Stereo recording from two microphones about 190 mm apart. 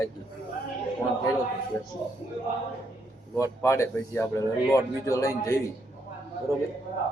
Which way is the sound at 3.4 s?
15° left (ahead or behind).